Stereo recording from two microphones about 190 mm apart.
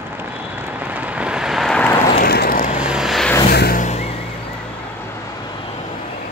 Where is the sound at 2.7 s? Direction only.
5° right (ahead or behind).